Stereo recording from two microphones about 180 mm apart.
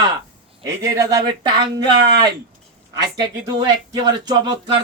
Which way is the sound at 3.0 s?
20° right (ahead or behind).